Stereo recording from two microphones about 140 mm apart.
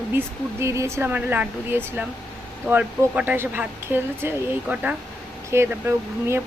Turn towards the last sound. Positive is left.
turn(degrees=-20)  # may be behind; listen again after turning